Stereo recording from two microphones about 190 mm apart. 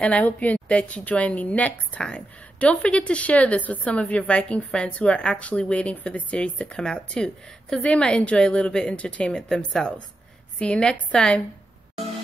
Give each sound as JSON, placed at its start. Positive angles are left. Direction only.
{"t": 0.0, "sound": "a woman's voice", "side_deg": 5}